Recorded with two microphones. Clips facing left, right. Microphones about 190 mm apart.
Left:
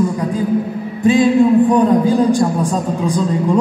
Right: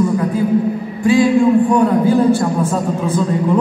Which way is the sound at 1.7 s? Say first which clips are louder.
Even; 20° left (ahead or behind).